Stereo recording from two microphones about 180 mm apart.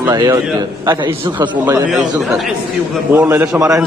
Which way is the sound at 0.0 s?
20° right (ahead or behind).